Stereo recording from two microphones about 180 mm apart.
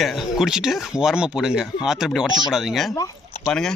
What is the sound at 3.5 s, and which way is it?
Speech, 5° left (ahead or behind).